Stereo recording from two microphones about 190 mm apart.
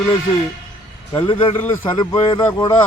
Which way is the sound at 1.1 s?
25° left (ahead or behind).